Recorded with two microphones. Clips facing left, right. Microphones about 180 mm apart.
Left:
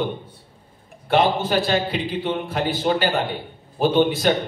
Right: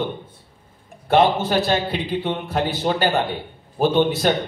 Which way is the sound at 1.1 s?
40° right (ahead or behind).